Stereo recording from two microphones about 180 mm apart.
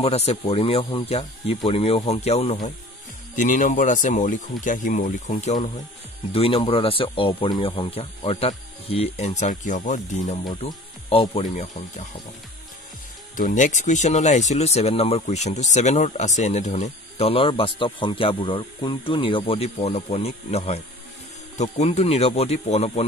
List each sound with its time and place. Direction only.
0.0 s speech: 35° left (ahead or behind)
3.3 s speech: 45° left (ahead or behind)
6.3 s speech: 30° left (ahead or behind)
11.4 s speech: 45° left (ahead or behind)
13.4 s speech: 45° left (ahead or behind)